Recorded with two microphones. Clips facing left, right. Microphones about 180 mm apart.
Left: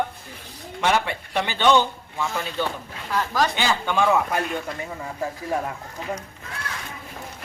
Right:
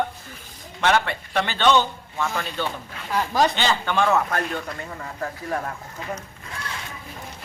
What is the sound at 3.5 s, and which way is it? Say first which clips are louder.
Speech: even; 5° left (ahead or behind).